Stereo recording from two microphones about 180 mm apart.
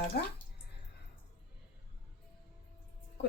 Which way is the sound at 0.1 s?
55° left (ahead or behind).